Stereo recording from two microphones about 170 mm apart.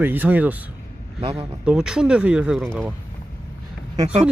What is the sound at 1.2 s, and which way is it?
Speech, 35° right (ahead or behind).